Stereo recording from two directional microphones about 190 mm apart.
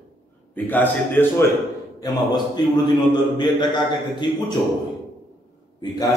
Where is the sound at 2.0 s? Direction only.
20° left (ahead or behind).